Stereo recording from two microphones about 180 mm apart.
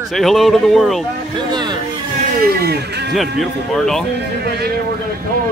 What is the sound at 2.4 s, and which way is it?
Speech, 60° right (ahead or behind).